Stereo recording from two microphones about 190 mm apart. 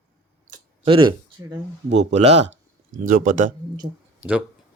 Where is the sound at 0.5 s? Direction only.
30° right (ahead or behind).